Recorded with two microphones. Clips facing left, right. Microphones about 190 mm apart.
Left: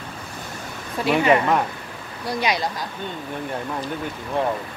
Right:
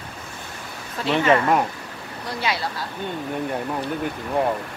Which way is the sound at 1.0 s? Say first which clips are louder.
Left 1 dB; 15° left (ahead or behind).